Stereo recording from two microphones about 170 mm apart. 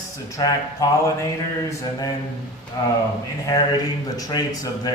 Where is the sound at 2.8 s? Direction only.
20° left (ahead or behind).